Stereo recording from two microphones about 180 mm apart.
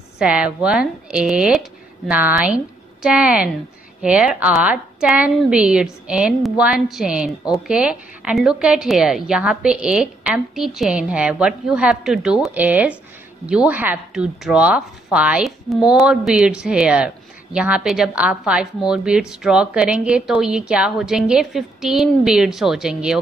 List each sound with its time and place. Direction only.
0.2 s a woman's voice: 5° right (ahead or behind)